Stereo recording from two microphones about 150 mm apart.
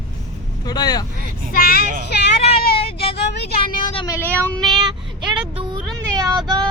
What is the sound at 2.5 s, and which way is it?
Vehicle, 90° left.